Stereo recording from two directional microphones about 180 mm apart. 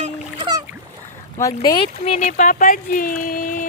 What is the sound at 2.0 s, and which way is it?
Speech, 40° left (ahead or behind).